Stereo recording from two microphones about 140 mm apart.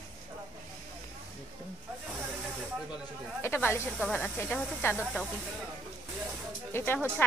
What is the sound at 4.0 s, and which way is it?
Speech, 5° left (ahead or behind).